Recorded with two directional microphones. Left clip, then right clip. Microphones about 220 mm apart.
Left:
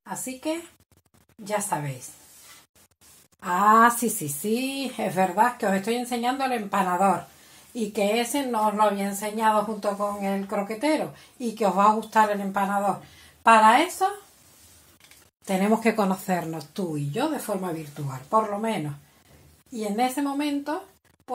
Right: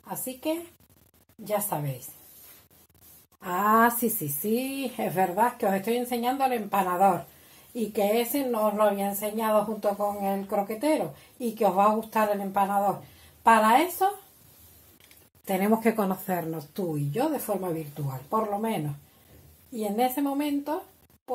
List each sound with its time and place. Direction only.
0.0 s a woman's voice: 15° left (ahead or behind)
3.4 s a woman's voice: 15° left (ahead or behind)
15.4 s a woman's voice: 15° left (ahead or behind)
19.8 s a woman's voice: 15° left (ahead or behind)